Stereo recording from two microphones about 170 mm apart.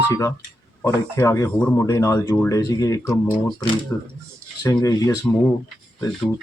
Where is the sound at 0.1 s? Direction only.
20° left (ahead or behind).